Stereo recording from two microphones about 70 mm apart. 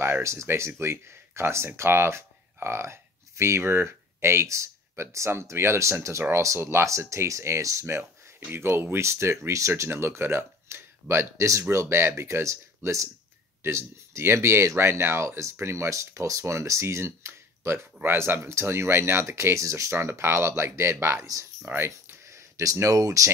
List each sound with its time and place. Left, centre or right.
0.0 s speech: right
21.6 s speech: right